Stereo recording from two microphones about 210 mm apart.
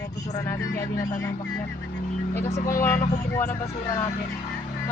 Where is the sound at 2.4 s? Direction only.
35° left (ahead or behind).